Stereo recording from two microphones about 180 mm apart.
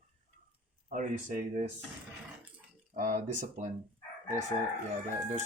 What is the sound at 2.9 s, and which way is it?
Speech, 45° right (ahead or behind).